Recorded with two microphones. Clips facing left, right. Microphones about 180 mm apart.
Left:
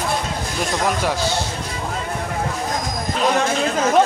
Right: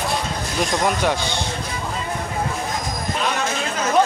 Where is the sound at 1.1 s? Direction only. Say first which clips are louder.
Left 1 dB; 5° left (ahead or behind).